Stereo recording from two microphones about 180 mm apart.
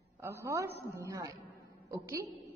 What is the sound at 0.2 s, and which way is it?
A woman's voice, 15° right (ahead or behind).